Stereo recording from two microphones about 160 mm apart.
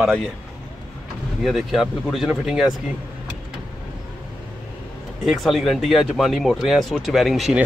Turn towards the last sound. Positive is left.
turn(degrees=0)  # may be behind; listen again after turning